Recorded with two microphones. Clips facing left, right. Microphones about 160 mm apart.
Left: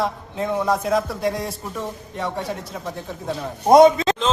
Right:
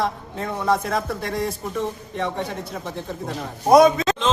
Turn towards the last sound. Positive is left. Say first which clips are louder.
# left 2 dB
turn(degrees=25)  # may be behind; listen again after turning